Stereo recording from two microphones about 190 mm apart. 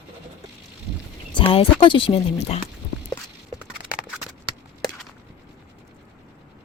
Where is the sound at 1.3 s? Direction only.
30° left (ahead or behind).